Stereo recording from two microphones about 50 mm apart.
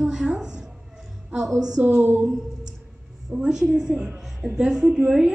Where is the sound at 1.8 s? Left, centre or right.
Right.